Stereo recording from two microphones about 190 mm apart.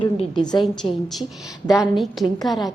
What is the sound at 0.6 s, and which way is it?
A woman's voice, centre (ahead or behind).